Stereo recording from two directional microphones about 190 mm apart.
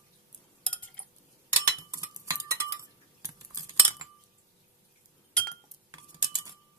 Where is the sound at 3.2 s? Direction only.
20° right (ahead or behind).